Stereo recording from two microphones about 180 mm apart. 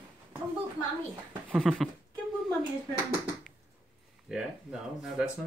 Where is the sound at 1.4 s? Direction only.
Centre (ahead or behind).